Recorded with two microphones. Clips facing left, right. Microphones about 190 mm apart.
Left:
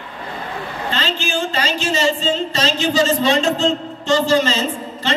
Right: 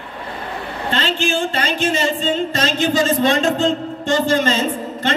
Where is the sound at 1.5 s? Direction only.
55° right (ahead or behind).